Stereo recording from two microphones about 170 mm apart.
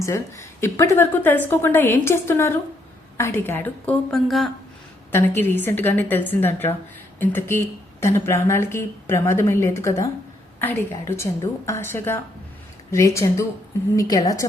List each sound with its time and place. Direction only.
0.0 s a woman's voice: 15° left (ahead or behind)
5.1 s a woman's voice: 10° left (ahead or behind)